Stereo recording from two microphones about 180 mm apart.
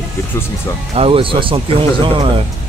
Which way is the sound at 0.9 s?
30° right (ahead or behind).